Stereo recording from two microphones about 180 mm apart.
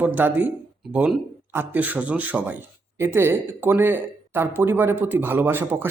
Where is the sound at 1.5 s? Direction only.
10° right (ahead or behind).